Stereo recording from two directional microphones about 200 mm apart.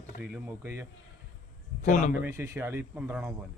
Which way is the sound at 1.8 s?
40° left (ahead or behind).